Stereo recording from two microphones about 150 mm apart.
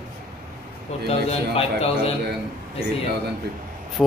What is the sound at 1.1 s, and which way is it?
Speech, 40° left (ahead or behind).